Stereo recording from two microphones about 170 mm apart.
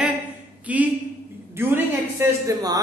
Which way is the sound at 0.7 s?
10° right (ahead or behind).